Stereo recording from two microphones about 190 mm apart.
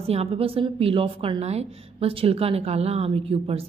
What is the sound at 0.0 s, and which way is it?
A woman's voice, 30° right (ahead or behind).